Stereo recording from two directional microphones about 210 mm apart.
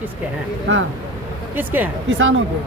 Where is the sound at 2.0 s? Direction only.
65° right (ahead or behind).